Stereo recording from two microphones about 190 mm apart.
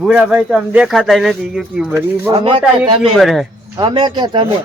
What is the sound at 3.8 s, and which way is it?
Speech, 25° right (ahead or behind).